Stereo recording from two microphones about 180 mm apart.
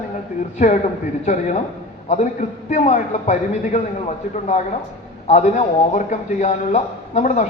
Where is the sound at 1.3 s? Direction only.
40° left (ahead or behind).